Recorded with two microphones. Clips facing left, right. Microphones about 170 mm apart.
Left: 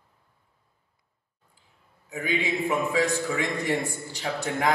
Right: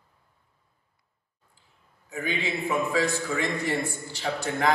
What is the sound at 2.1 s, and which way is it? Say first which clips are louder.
A man's voice: left 2 dB; 15° left (ahead or behind).